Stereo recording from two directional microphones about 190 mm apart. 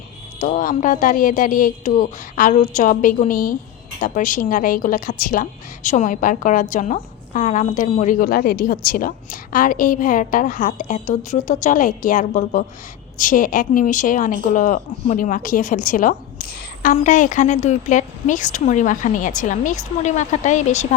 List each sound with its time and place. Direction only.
0.3 s a woman's voice: 40° left (ahead or behind)